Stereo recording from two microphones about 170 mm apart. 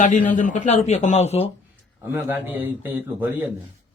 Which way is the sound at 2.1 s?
10° right (ahead or behind).